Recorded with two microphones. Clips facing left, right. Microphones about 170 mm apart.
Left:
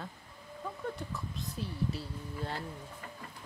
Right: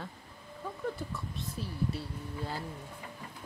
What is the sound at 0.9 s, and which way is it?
Speech, centre (ahead or behind).